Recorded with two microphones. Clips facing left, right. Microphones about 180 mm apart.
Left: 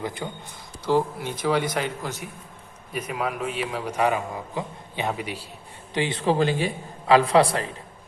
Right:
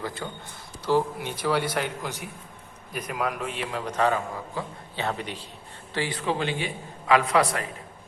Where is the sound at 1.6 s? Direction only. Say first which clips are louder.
Left 1 dB; 10° right (ahead or behind).